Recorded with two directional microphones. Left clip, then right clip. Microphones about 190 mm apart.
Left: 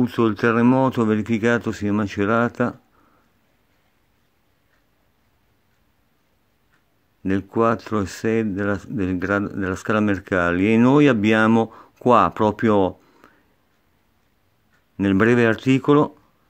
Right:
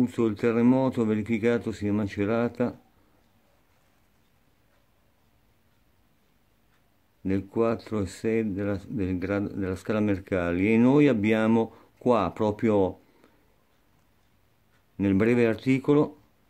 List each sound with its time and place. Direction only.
0.0 s speech: 25° left (ahead or behind)
7.2 s speech: 30° left (ahead or behind)
15.0 s speech: 30° left (ahead or behind)